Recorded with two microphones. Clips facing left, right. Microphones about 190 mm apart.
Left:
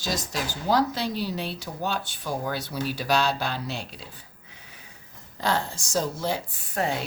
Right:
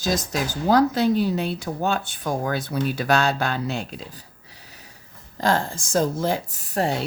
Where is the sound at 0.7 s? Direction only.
50° right (ahead or behind).